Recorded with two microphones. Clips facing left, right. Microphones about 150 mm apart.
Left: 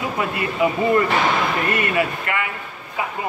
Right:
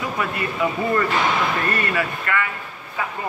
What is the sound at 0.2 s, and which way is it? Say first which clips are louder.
Speech: left 3 dB; 20° left (ahead or behind).